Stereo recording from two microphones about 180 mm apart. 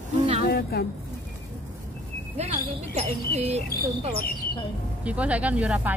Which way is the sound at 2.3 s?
35° right (ahead or behind).